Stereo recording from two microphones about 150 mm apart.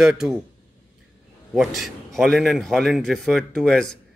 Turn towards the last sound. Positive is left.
turn(degrees=5)  # may be behind; listen again after turning